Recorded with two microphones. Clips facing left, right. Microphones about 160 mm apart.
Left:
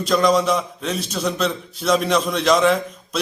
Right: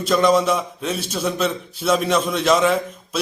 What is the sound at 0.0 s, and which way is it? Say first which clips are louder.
A man's voice: right 1 dB; centre (ahead or behind).